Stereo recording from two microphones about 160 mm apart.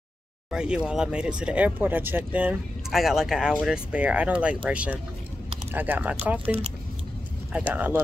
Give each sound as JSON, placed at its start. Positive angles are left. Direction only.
{"t": 0.5, "sound": "speech", "side_deg": -5}